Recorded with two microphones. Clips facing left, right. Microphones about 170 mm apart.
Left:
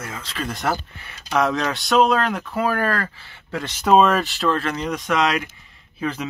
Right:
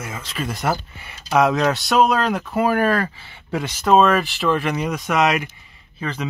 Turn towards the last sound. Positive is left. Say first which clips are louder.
# left 2 dB
turn(degrees=0)  # may be behind; listen again after turning